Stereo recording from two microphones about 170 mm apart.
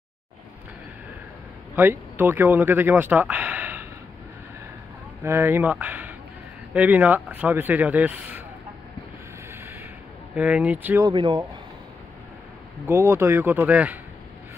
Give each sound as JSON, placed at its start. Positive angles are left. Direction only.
{"t": 1.8, "sound": "speech", "side_deg": -10}
{"t": 5.2, "sound": "speech", "side_deg": -15}
{"t": 10.3, "sound": "speech", "side_deg": -10}
{"t": 11.1, "sound": "speech", "side_deg": -30}
{"t": 12.8, "sound": "speech", "side_deg": -15}